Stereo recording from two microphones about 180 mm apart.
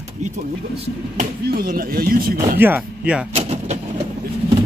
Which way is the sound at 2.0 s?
55° right (ahead or behind).